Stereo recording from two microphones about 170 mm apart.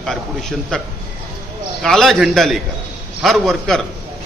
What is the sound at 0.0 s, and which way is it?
A man's voice, centre (ahead or behind).